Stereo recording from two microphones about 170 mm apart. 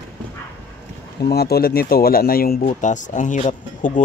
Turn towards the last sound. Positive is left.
turn(degrees=45)  # may be behind; listen again after turning